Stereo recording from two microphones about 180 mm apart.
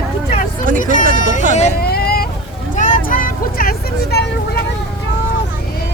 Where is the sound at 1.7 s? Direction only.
60° left (ahead or behind).